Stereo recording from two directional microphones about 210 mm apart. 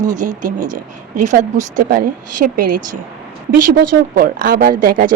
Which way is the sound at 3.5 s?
45° right (ahead or behind).